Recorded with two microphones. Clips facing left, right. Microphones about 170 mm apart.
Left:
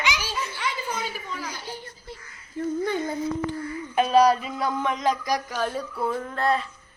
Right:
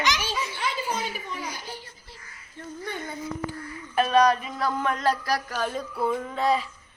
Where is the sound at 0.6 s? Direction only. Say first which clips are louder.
Right 1 dB; 25° right (ahead or behind).